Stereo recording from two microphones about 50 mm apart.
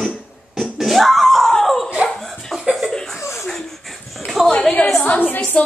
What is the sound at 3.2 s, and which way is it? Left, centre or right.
Chuckle, left.